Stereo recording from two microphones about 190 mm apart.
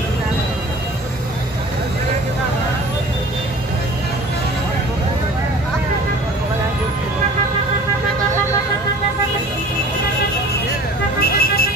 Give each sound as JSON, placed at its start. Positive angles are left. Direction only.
{"t": 11.1, "sound": "vehicle", "side_deg": 55}